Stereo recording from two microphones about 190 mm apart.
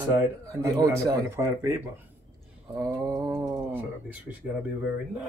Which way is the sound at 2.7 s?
20° right (ahead or behind).